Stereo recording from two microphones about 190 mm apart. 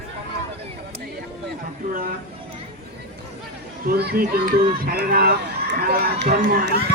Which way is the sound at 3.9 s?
55° right (ahead or behind).